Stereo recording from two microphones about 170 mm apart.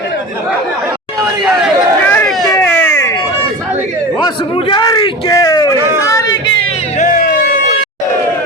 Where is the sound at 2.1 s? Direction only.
10° left (ahead or behind).